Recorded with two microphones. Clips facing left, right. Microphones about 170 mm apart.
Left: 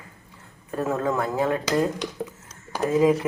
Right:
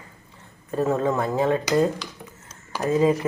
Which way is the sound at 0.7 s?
Centre (ahead or behind).